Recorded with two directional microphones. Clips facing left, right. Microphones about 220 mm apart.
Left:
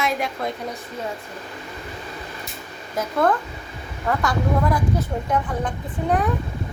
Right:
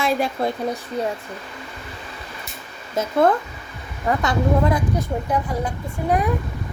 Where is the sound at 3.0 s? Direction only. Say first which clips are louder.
Right 3 dB; 25° right (ahead or behind).